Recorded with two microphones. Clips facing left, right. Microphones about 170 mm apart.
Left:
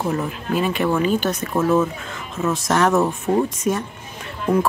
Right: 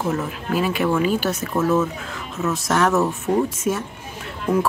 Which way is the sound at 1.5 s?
10° left (ahead or behind).